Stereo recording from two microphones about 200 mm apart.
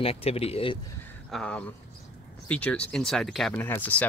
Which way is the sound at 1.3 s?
5° left (ahead or behind).